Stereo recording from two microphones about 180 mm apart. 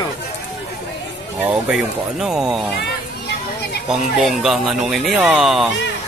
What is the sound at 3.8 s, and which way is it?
Speech, centre (ahead or behind).